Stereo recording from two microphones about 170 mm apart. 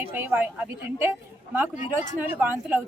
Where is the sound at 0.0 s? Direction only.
10° right (ahead or behind).